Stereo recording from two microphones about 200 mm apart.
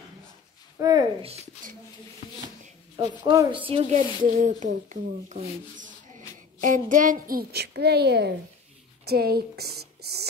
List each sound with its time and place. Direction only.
0.7 s speech: 20° right (ahead or behind)
3.0 s speech: 20° right (ahead or behind)
4.2 s a woman's voice: 40° right (ahead or behind)